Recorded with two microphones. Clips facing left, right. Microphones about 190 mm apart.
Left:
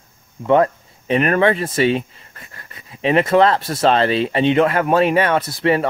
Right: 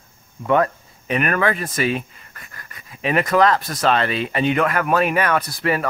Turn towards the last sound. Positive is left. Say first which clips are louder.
# left 4 dB
turn(degrees=25)  # may be behind; listen again after turning